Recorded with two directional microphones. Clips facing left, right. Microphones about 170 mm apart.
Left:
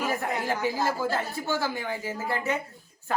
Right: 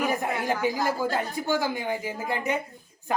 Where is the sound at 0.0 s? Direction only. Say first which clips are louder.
Right 2 dB; 20° right (ahead or behind).